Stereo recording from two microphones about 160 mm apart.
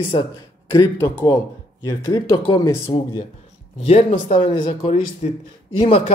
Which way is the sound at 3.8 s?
40° left (ahead or behind).